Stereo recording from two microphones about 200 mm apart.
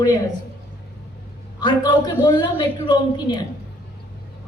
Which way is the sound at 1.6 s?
20° left (ahead or behind).